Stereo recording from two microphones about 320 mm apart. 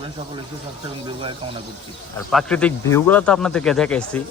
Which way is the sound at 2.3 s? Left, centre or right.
Centre.